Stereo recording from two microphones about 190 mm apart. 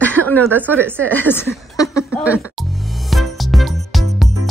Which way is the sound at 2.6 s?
Centre (ahead or behind).